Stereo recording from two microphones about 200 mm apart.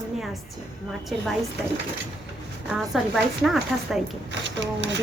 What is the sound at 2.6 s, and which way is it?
Speech, 5° right (ahead or behind).